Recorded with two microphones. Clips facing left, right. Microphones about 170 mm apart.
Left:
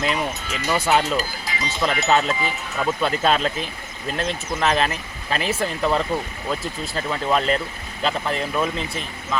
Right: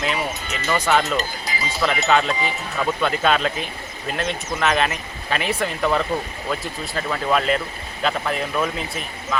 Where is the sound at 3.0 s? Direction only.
35° left (ahead or behind).